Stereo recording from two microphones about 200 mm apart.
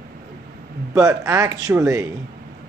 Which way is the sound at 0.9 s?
15° right (ahead or behind).